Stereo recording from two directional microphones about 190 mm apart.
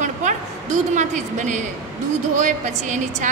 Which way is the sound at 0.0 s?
40° right (ahead or behind).